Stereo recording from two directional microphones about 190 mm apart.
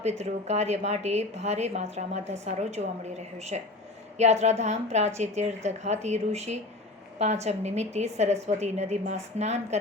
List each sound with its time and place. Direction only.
0.0 s speech: 35° right (ahead or behind)